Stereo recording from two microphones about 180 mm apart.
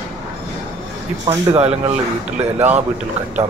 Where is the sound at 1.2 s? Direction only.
35° right (ahead or behind).